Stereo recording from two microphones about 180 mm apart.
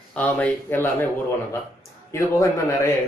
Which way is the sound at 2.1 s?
15° left (ahead or behind).